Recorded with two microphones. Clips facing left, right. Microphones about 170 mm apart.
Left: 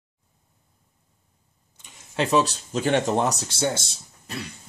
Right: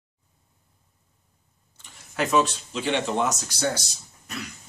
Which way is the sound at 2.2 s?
35° left (ahead or behind).